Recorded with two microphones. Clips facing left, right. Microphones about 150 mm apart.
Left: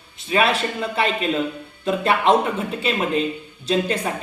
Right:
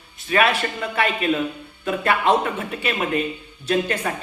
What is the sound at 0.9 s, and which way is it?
Speech, 30° left (ahead or behind).